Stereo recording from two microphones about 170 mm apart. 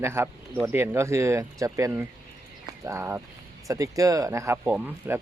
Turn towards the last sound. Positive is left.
turn(degrees=-10)  # may be behind; listen again after turning